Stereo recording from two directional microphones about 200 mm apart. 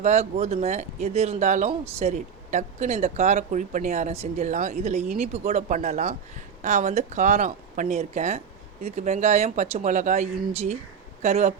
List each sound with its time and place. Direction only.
0.0 s speech: 35° right (ahead or behind)